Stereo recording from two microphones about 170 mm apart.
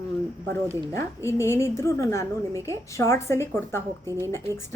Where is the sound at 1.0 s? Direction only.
15° left (ahead or behind).